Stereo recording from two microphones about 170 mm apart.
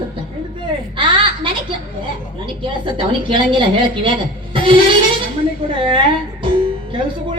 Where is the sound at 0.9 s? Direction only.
30° right (ahead or behind).